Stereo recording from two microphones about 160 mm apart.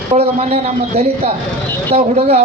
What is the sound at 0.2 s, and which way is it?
A man's voice, 40° right (ahead or behind).